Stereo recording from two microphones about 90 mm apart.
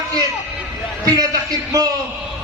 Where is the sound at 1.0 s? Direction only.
45° right (ahead or behind).